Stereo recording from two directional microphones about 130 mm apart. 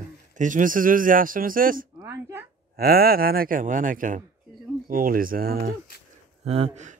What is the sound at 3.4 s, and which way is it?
Speech, 90° right.